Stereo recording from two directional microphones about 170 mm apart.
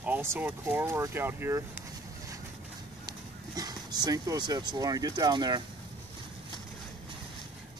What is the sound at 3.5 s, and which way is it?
Speech, 25° right (ahead or behind).